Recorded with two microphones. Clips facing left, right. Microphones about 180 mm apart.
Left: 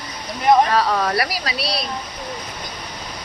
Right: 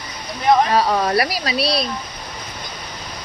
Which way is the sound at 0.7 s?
20° right (ahead or behind).